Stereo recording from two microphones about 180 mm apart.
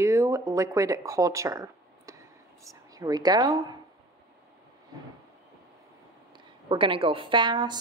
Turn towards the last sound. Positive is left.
turn(degrees=-25)  # may be behind; listen again after turning